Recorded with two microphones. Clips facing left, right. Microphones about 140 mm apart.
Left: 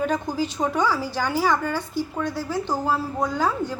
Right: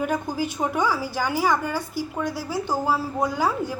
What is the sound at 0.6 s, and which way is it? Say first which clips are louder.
A woman's voice: left 1 dB; 10° right (ahead or behind).